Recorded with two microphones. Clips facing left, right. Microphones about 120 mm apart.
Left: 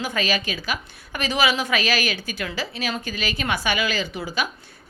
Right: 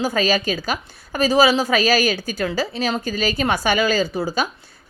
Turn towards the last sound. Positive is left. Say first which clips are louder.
# right 6 dB
turn(degrees=-40)  # may be behind; listen again after turning